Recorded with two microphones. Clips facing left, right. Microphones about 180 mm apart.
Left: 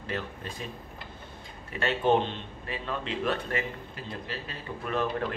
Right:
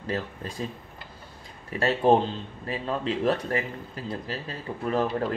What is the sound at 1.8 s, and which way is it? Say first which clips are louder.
A man's voice: right 4 dB; 35° right (ahead or behind).